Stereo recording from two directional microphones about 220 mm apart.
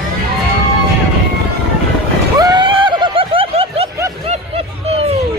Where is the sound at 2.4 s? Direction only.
20° right (ahead or behind).